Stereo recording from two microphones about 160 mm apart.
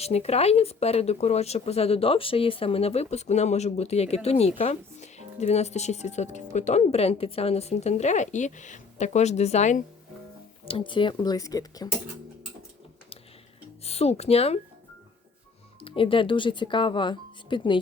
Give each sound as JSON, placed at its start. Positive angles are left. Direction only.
{"t": 0.0, "sound": "speech", "side_deg": 40}
{"t": 10.7, "sound": "speech", "side_deg": 35}
{"t": 13.8, "sound": "speech", "side_deg": 40}
{"t": 15.8, "sound": "speech", "side_deg": 35}